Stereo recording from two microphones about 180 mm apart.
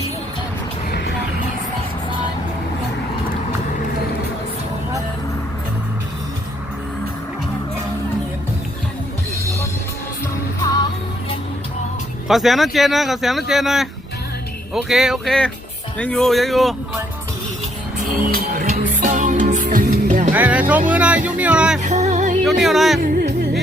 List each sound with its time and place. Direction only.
0.9 s music: 60° left (ahead or behind)
12.3 s speech: centre (ahead or behind)
18.5 s music: 45° right (ahead or behind)
20.3 s music: 10° right (ahead or behind)
20.9 s speech: 5° right (ahead or behind)
21.8 s music: 40° right (ahead or behind)
22.4 s speech: centre (ahead or behind)
23.0 s music: 55° right (ahead or behind)